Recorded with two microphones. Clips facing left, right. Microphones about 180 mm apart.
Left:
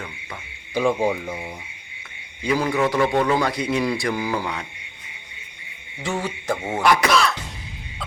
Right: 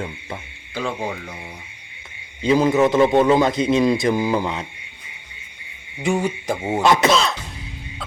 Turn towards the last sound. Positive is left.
turn(degrees=-20)  # may be behind; listen again after turning